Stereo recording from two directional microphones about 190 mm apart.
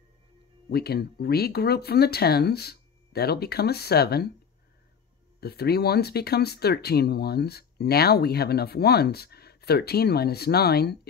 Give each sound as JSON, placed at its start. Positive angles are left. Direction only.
{"t": 0.7, "sound": "speech", "side_deg": 55}
{"t": 5.4, "sound": "speech", "side_deg": 55}